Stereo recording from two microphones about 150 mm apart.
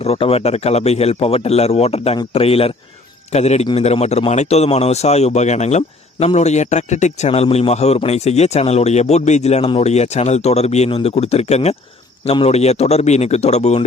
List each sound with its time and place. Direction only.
0.0 s a man's voice: 40° left (ahead or behind)